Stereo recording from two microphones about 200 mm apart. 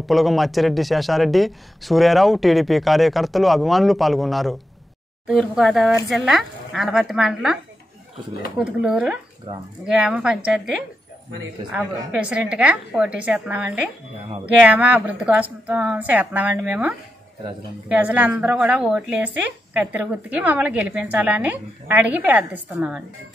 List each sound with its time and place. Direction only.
0.0 s speech: centre (ahead or behind)
8.5 s speech: 5° right (ahead or behind)
9.5 s speech: 25° right (ahead or behind)
9.8 s a woman's voice: 5° right (ahead or behind)